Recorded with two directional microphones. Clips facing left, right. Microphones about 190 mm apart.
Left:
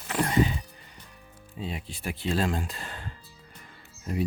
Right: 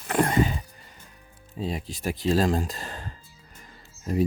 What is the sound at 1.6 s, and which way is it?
Speech, 40° right (ahead or behind).